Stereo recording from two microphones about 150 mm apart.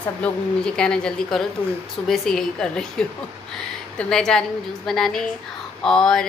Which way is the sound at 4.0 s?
5° left (ahead or behind).